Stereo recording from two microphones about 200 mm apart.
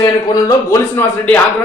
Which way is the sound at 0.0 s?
15° left (ahead or behind).